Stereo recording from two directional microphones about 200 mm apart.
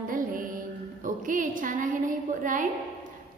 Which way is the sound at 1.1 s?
40° right (ahead or behind).